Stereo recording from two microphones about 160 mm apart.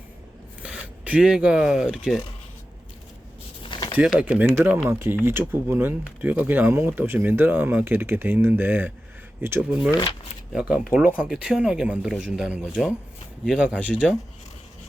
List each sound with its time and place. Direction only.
0.6 s speech: 5° right (ahead or behind)
3.6 s a sound: 30° left (ahead or behind)
3.9 s speech: 5° right (ahead or behind)
9.9 s speech: 25° left (ahead or behind)
10.5 s speech: 5° right (ahead or behind)